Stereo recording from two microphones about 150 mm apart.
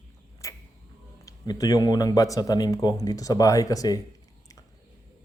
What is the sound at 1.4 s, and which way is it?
Speech, 25° left (ahead or behind).